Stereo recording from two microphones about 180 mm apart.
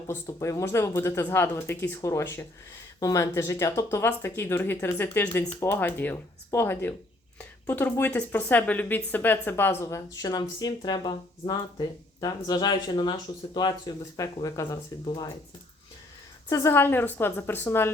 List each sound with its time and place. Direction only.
0.1 s speech: 15° left (ahead or behind)
16.5 s speech: 15° left (ahead or behind)